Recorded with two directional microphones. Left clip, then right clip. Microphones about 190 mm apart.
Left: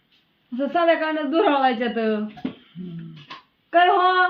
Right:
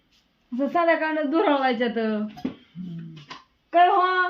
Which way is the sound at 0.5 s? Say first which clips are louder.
Left 2 dB; 15° right (ahead or behind).